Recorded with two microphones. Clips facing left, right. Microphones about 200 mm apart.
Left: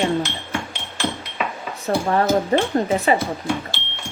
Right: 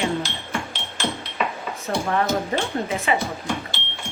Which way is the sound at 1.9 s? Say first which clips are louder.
Left 4 dB; 35° left (ahead or behind).